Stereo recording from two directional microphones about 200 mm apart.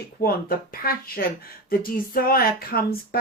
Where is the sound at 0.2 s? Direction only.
45° left (ahead or behind).